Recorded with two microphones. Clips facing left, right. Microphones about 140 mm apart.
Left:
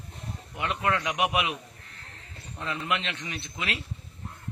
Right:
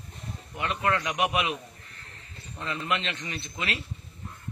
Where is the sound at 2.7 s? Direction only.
10° left (ahead or behind).